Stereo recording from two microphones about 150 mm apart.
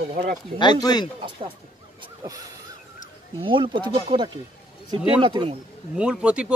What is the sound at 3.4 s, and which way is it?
Speech, 35° right (ahead or behind).